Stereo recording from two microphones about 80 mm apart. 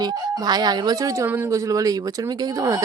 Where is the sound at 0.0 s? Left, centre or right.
Right.